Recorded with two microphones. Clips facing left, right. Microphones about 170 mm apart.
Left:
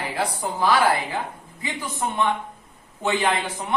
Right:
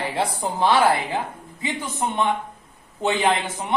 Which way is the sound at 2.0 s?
20° right (ahead or behind).